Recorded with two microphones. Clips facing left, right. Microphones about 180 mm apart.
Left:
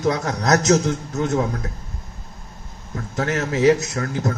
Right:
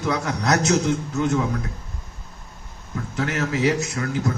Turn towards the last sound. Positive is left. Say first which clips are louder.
# even
turn(degrees=40)  # may be behind; listen again after turning